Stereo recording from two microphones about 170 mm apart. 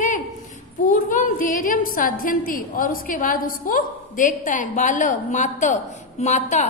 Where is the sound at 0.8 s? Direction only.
50° left (ahead or behind).